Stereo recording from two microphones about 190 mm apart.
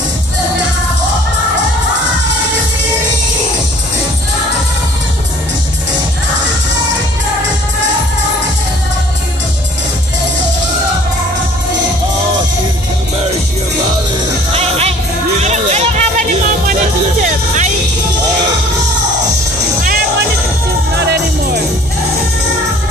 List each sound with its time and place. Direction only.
14.5 s music: 35° right (ahead or behind)
20.9 s music: 60° right (ahead or behind)